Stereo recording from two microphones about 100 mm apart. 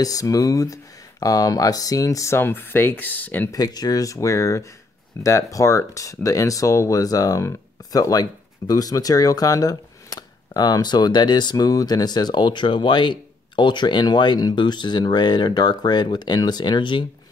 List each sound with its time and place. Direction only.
0.0 s speech: 35° left (ahead or behind); by 3.4 s 15° left (ahead or behind)
3.5 s speech: 40° left (ahead or behind)